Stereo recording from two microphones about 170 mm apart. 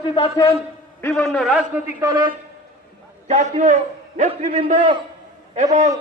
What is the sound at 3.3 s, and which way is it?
A man's voice, 45° right (ahead or behind).